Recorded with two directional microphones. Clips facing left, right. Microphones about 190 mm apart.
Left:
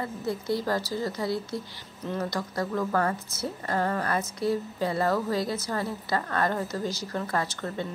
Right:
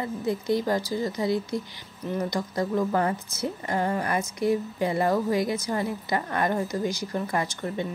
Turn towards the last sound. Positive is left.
turn(degrees=-15)  # may be behind; listen again after turning